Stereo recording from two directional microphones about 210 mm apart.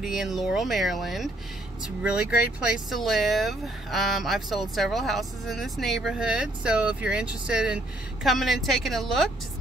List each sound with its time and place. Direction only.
0.0 s speech: centre (ahead or behind)